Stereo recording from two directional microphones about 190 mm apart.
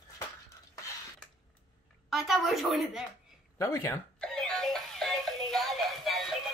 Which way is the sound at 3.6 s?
15° left (ahead or behind).